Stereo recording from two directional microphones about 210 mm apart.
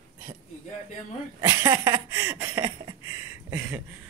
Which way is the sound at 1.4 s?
15° right (ahead or behind).